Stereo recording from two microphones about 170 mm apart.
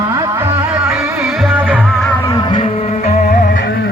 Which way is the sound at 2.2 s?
25° left (ahead or behind).